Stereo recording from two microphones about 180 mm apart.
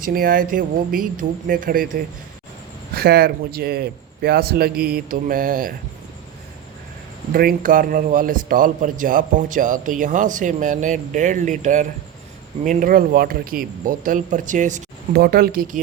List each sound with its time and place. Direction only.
0.0 s a man's voice: 50° right (ahead or behind)
7.3 s a man's voice: 55° right (ahead or behind)
15.2 s a man's voice: 55° right (ahead or behind)